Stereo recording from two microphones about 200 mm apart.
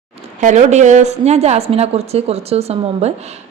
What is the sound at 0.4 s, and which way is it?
A man's voice, 35° right (ahead or behind).